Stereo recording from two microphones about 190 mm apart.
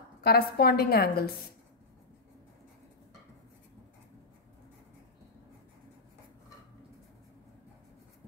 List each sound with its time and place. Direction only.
0.2 s a woman's voice: 55° left (ahead or behind)